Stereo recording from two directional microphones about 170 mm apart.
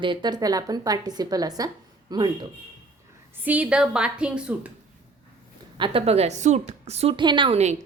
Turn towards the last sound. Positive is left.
turn(degrees=-40)  # may be behind; listen again after turning